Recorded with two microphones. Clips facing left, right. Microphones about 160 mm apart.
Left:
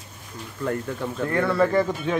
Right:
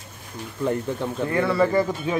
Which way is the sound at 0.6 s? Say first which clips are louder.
Right 2 dB; 20° right (ahead or behind).